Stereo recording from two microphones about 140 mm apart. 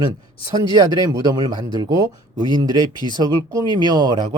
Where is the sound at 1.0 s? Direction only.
30° right (ahead or behind).